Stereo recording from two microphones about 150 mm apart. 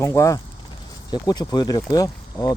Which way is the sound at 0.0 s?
20° left (ahead or behind).